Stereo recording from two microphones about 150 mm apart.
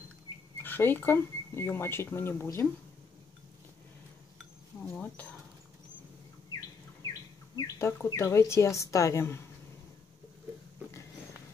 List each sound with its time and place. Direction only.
0.6 s speech: 15° left (ahead or behind)
4.9 s speech: 10° left (ahead or behind)
7.5 s speech: 20° left (ahead or behind)